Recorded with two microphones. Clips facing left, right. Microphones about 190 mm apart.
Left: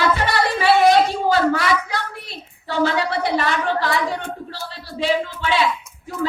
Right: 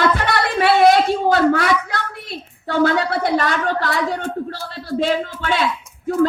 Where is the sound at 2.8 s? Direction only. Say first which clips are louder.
Right 2 dB; 45° right (ahead or behind).